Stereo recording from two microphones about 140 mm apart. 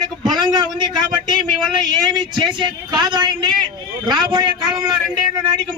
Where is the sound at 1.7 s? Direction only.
30° right (ahead or behind).